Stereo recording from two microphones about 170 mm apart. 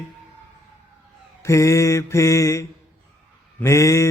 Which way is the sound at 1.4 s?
20° left (ahead or behind).